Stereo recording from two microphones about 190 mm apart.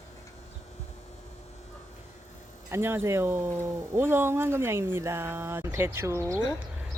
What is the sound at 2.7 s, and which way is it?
Speech, 10° right (ahead or behind).